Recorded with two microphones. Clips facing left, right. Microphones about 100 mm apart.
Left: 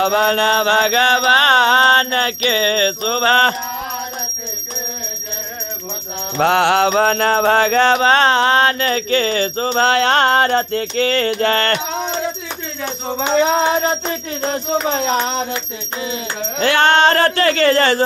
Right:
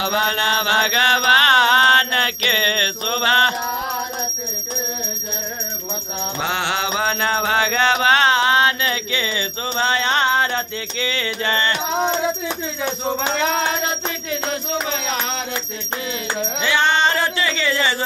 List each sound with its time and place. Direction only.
0.0 s mantra: 40° left (ahead or behind)
6.3 s mantra: 55° left (ahead or behind)
13.4 s music: 20° left (ahead or behind)
14.5 s mantra: 40° left (ahead or behind)
16.5 s speech: 55° left (ahead or behind)